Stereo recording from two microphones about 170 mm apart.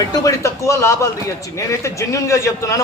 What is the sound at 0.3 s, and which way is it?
A man's voice, 15° left (ahead or behind).